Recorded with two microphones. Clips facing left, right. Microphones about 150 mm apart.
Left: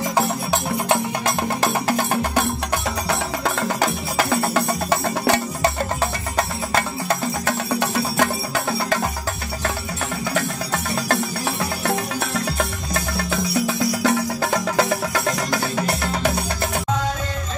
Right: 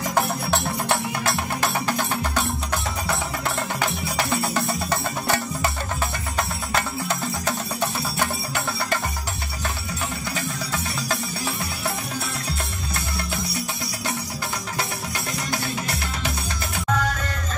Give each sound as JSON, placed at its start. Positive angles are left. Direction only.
{"t": 0.1, "sound": "music", "side_deg": 0}
{"t": 7.8, "sound": "music", "side_deg": 90}
{"t": 10.3, "sound": "music", "side_deg": 60}
{"t": 14.0, "sound": "music", "side_deg": 90}